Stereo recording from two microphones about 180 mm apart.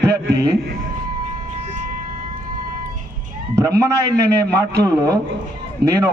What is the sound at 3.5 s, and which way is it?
A man's voice, 15° right (ahead or behind).